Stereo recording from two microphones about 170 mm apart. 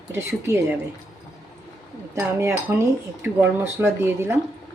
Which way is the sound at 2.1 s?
15° right (ahead or behind).